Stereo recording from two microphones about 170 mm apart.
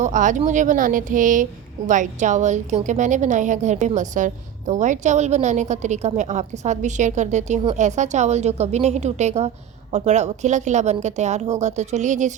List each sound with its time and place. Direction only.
0.0 s a woman's voice: 45° right (ahead or behind)